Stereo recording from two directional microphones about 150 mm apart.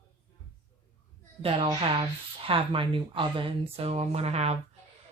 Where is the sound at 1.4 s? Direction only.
35° right (ahead or behind).